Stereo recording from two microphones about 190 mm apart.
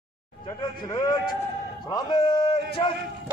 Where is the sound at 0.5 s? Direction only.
20° left (ahead or behind).